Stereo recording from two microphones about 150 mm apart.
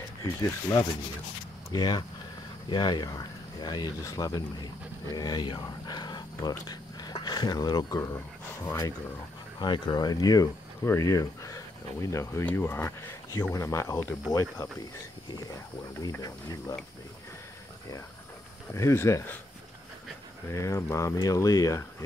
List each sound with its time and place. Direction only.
0.4 s speech: 20° left (ahead or behind)
16.0 s speech: 20° left (ahead or behind)
18.7 s speech: 20° left (ahead or behind)
20.4 s speech: 20° left (ahead or behind)